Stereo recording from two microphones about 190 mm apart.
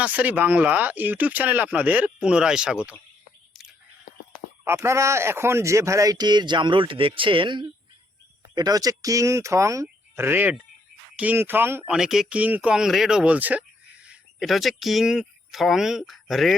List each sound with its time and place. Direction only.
0.0 s speech: 10° right (ahead or behind)
4.6 s speech: 15° right (ahead or behind)